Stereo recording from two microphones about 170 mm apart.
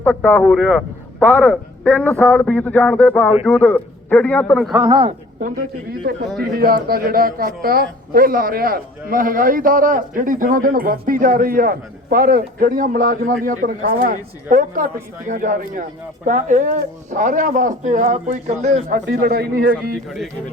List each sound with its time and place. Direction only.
0.0 s speech: 10° left (ahead or behind)
0.4 s speech: centre (ahead or behind)
4.7 s a man's voice: 30° right (ahead or behind)
5.4 s a man's voice: 60° right (ahead or behind)
15.3 s speech: 50° right (ahead or behind)
19.0 s a man's voice: 65° right (ahead or behind)